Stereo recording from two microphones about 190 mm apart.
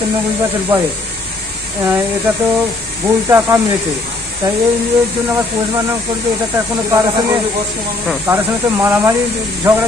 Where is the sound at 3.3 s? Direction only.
15° right (ahead or behind).